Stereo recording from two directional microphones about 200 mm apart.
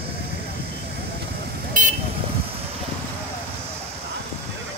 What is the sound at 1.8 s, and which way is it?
Vehicle, 40° right (ahead or behind).